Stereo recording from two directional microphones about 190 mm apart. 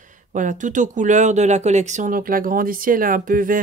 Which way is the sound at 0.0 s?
40° right (ahead or behind).